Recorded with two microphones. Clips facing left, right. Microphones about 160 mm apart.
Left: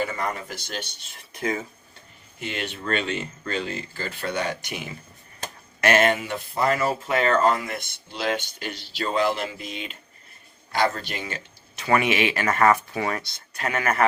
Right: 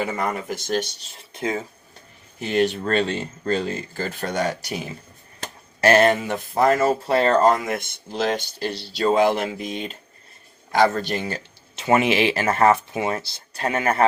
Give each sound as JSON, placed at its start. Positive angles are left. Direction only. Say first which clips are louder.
{"t": 0.3, "sound": "speech", "louder": "right 6 dB", "side_deg": -50}
{"t": 2.4, "sound": "speech", "louder": "right 10 dB", "side_deg": -40}
{"t": 11.8, "sound": "speech", "louder": "right 3 dB", "side_deg": -25}